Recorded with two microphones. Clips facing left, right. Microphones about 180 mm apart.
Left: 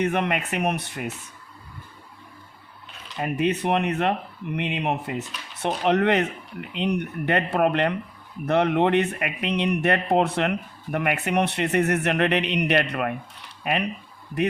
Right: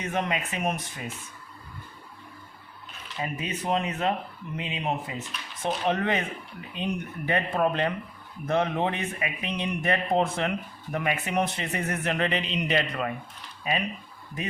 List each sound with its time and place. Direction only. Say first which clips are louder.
0.0 s speech: left 5 dB; 60° left (ahead or behind)
3.2 s speech: left 8 dB; 60° left (ahead or behind)